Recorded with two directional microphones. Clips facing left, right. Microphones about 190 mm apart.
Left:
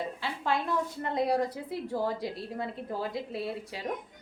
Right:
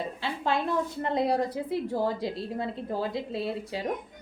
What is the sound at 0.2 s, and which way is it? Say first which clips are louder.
A woman's voice: right 4 dB; 25° right (ahead or behind).